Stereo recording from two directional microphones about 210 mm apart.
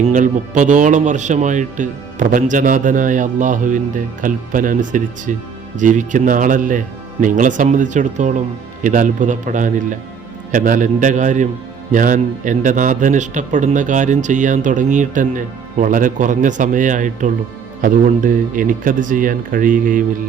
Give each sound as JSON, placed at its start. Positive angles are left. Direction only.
{"t": 0.0, "sound": "a man's voice", "side_deg": -35}